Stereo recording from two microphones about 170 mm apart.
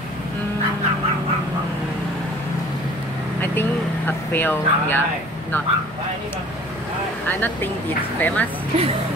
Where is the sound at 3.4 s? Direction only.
10° left (ahead or behind).